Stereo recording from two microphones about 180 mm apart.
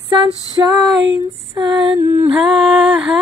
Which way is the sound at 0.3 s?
20° left (ahead or behind).